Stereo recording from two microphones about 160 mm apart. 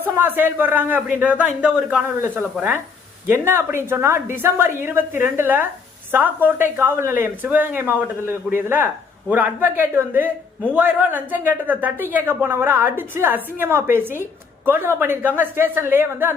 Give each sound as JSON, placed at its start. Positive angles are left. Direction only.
{"t": 0.0, "sound": "speech", "side_deg": -10}